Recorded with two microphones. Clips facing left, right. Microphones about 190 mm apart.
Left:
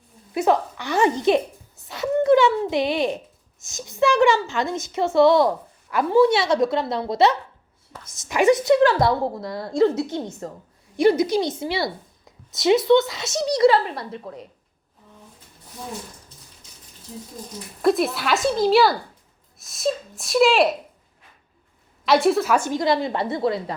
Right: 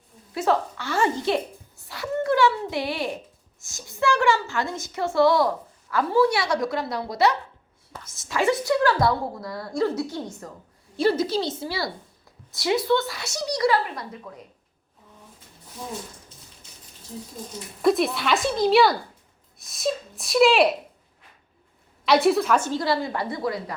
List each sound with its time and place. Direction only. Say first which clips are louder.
0.3 s a woman's voice: left 3 dB; 15° left (ahead or behind)
1.9 s a sound: left 7 dB; 20° left (ahead or behind)
3.6 s a woman's voice: left 5 dB; 20° left (ahead or behind)
17.8 s speech: left 1 dB; centre (ahead or behind)
22.0 s a woman's voice: left 1 dB; centre (ahead or behind); by 23.7 s 25° left (ahead or behind)